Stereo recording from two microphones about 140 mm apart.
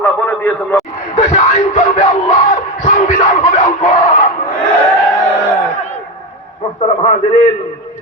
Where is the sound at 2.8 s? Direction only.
60° left (ahead or behind).